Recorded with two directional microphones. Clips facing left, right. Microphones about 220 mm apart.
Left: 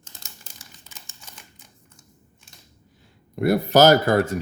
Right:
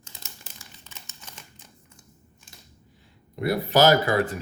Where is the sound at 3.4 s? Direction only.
45° left (ahead or behind).